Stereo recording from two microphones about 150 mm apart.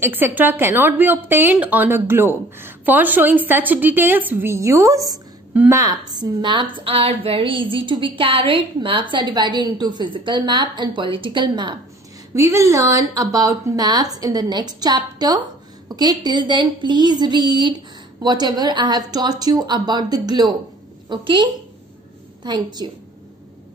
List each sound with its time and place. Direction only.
0.0 s a woman's voice: 15° right (ahead or behind); by 11.8 s 30° right (ahead or behind)
12.4 s a woman's voice: 20° right (ahead or behind)